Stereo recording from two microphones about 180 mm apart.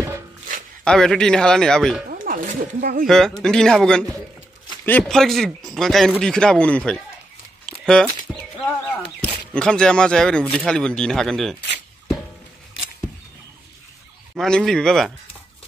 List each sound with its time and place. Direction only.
0.8 s speech: 5° left (ahead or behind)
2.1 s a sound: 50° right (ahead or behind)
3.1 s speech: centre (ahead or behind)
7.6 s a sound: 5° left (ahead or behind)
9.2 s speech: 5° left (ahead or behind)
14.3 s speech: centre (ahead or behind)